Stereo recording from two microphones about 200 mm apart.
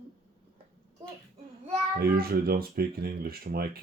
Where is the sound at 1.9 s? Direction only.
50° right (ahead or behind).